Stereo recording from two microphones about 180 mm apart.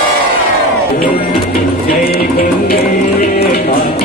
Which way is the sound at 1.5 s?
55° left (ahead or behind).